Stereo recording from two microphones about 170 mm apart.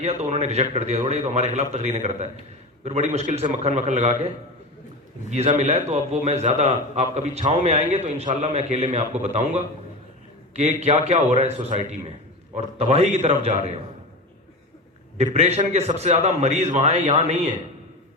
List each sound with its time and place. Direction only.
0.0 s a man's voice: 40° right (ahead or behind)
5.3 s a man's voice: 40° right (ahead or behind)
15.2 s a man's voice: 40° right (ahead or behind)